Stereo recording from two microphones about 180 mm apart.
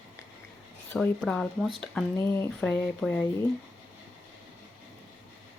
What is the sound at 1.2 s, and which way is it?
Speech, centre (ahead or behind).